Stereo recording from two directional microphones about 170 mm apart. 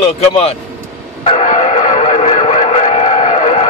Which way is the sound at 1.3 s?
45° left (ahead or behind).